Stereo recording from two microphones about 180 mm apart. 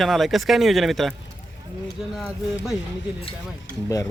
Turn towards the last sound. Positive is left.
turn(degrees=20)  # may be behind; listen again after turning